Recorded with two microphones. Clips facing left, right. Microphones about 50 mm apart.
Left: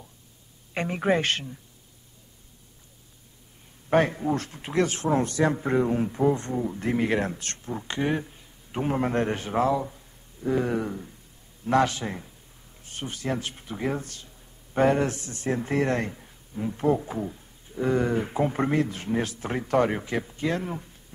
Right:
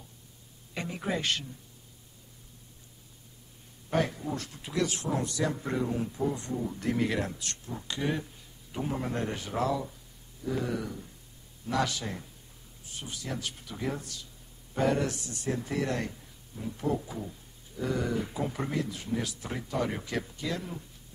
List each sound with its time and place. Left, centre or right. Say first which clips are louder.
0.7 s speech: left 9 dB; left
3.9 s speech: left 7 dB; left
6.6 s speech: left 4 dB; left
8.8 s speech: left 8 dB; left
12.8 s speech: left 8 dB; left
20.0 s speech: left 4 dB; left
20.3 s speech: left 7 dB; left